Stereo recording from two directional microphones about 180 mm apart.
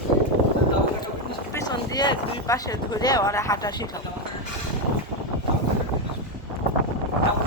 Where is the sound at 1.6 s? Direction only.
25° left (ahead or behind).